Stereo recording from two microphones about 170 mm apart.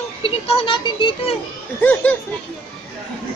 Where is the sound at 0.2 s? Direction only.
35° left (ahead or behind).